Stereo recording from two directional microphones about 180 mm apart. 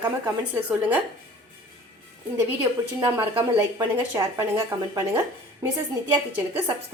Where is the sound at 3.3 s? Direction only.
25° right (ahead or behind).